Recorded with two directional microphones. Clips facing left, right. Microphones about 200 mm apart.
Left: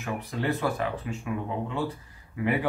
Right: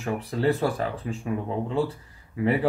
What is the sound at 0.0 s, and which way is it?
Speech, 30° right (ahead or behind).